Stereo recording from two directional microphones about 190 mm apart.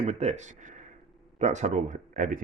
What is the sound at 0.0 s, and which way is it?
Speech, 35° right (ahead or behind).